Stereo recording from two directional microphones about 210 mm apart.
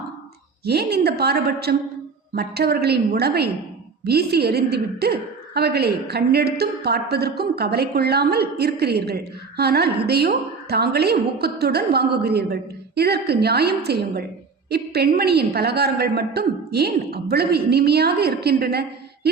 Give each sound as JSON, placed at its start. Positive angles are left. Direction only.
{"t": 0.6, "sound": "a woman's voice", "side_deg": -50}